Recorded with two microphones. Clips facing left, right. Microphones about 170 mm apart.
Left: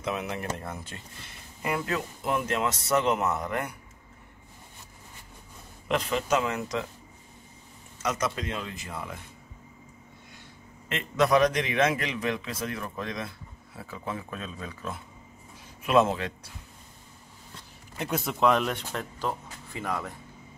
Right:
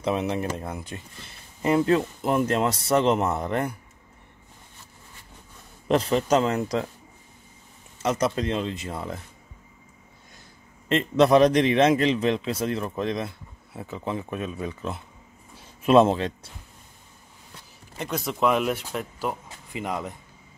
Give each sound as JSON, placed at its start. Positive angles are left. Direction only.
{"t": 0.0, "sound": "a man's voice", "side_deg": -30}
{"t": 5.9, "sound": "a man's voice", "side_deg": -35}
{"t": 8.0, "sound": "a man's voice", "side_deg": -30}
{"t": 10.9, "sound": "a man's voice", "side_deg": -30}
{"t": 17.9, "sound": "speech", "side_deg": 0}